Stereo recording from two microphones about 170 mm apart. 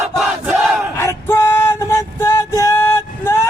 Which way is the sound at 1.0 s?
15° left (ahead or behind).